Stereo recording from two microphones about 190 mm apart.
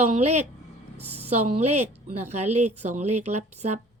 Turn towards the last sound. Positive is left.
turn(degrees=-35)  # may be behind; listen again after turning